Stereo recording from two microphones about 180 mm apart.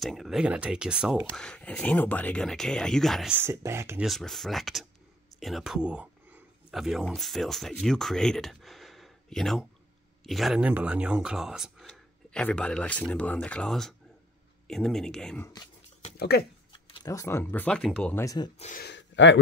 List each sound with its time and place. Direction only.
0.0 s speech: centre (ahead or behind)
1.3 s speech: 5° left (ahead or behind)
3.3 s speech: 15° right (ahead or behind)
4.0 s speech: centre (ahead or behind)
16.2 s speech: 60° left (ahead or behind)
16.7 s speech: 25° left (ahead or behind); by 18.2 s 5° left (ahead or behind)
18.2 s speech: 20° left (ahead or behind)
18.8 s speech: 80° left